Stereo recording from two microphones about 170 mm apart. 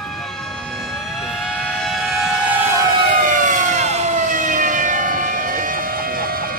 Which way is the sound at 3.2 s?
50° right (ahead or behind).